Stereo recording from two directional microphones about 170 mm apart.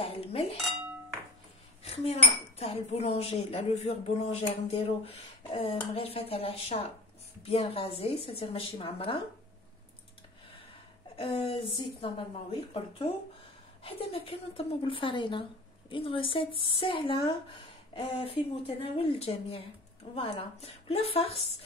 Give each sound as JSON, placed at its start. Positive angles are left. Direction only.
{"t": 0.0, "sound": "speech", "side_deg": 35}
{"t": 1.8, "sound": "cutlery", "side_deg": 35}
{"t": 2.6, "sound": "speech", "side_deg": 40}
{"t": 11.1, "sound": "speech", "side_deg": 35}